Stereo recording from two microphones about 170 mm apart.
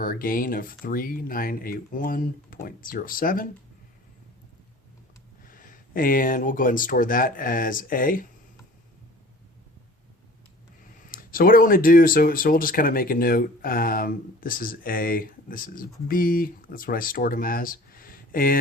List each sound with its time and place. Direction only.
0.0 s speech: 55° left (ahead or behind)
5.5 s speech: 55° left (ahead or behind)
11.1 s speech: 55° left (ahead or behind)